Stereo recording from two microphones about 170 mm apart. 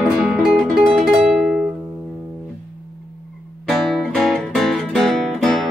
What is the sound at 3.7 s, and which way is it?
Music, centre (ahead or behind).